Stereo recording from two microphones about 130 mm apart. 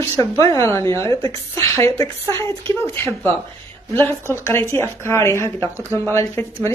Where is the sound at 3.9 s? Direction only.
20° left (ahead or behind).